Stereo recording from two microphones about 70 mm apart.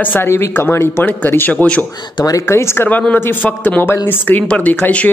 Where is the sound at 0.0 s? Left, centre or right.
Left.